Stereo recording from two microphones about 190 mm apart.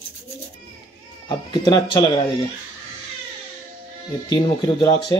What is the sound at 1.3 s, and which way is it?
Speech, 25° left (ahead or behind).